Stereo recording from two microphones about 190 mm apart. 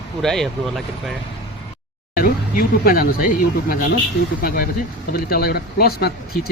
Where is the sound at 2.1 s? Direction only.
50° left (ahead or behind).